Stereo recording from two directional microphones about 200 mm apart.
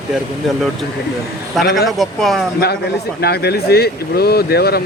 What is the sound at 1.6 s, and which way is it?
Speech, centre (ahead or behind).